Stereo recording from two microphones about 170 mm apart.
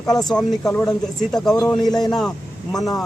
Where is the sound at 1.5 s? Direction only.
20° left (ahead or behind).